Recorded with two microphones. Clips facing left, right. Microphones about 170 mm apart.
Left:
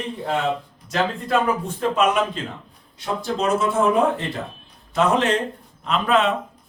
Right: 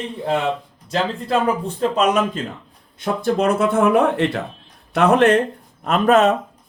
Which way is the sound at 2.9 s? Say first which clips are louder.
Right 5 dB; 55° right (ahead or behind).